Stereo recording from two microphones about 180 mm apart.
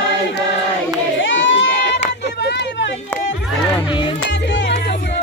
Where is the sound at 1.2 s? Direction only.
90° left.